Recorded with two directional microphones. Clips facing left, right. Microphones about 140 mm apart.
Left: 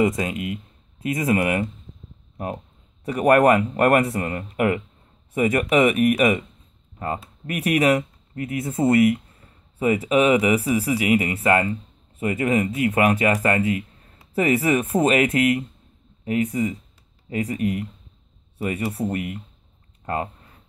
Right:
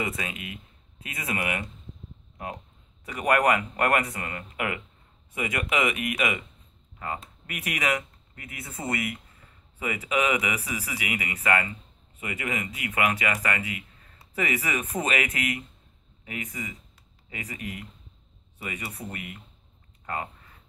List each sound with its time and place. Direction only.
0.0 s speech: 40° left (ahead or behind)
3.1 s speech: 45° left (ahead or behind)
7.5 s speech: 35° left (ahead or behind)
18.9 s speech: 45° left (ahead or behind)